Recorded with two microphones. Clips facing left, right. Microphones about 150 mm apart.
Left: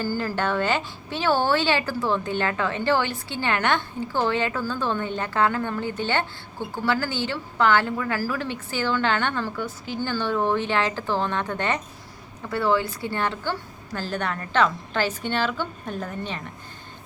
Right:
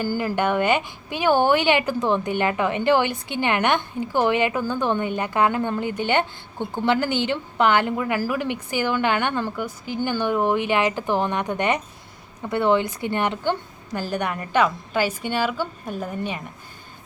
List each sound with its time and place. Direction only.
0.0 s a woman's voice: 15° right (ahead or behind)